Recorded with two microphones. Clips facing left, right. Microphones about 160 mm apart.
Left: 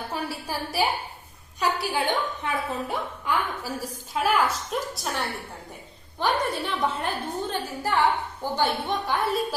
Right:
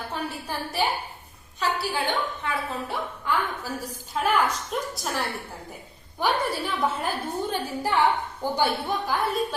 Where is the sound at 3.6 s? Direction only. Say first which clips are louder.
Left 1 dB; 10° left (ahead or behind).